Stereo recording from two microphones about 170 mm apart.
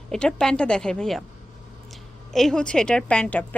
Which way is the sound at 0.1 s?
5° left (ahead or behind).